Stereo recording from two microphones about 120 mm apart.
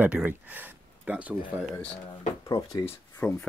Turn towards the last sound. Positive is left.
turn(degrees=10)  # may be behind; listen again after turning